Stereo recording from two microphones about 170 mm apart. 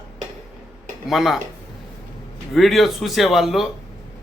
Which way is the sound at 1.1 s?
Centre (ahead or behind).